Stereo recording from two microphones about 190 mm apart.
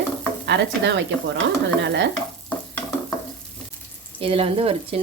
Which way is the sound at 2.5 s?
10° left (ahead or behind).